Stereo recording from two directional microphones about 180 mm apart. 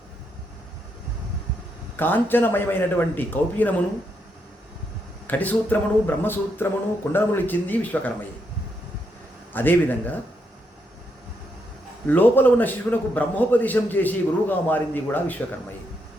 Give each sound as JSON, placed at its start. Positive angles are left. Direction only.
{"t": 2.0, "sound": "a man's voice", "side_deg": 10}
{"t": 5.3, "sound": "a man's voice", "side_deg": 10}
{"t": 9.5, "sound": "a man's voice", "side_deg": 10}
{"t": 12.0, "sound": "a man's voice", "side_deg": 10}